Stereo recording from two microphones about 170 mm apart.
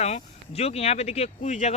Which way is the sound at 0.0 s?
40° left (ahead or behind).